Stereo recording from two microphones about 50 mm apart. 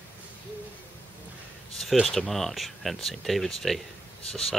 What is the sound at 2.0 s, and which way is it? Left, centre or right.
Speech, centre.